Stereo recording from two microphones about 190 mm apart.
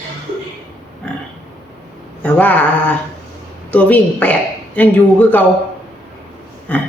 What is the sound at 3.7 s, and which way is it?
Speech, 5° left (ahead or behind).